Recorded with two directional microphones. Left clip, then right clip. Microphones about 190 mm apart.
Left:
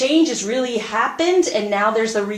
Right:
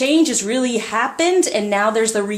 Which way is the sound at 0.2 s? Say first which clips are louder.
Right 1 dB; 50° right (ahead or behind).